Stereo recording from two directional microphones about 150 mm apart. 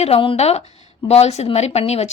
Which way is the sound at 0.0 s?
40° left (ahead or behind).